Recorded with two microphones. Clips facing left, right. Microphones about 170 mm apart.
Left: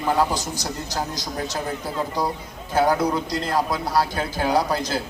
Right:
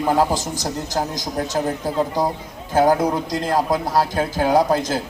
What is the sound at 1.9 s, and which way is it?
A man's voice, 45° right (ahead or behind).